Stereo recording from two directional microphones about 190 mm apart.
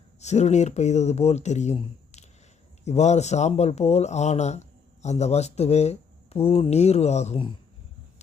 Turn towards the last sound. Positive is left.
turn(degrees=35)  # may be behind; listen again after turning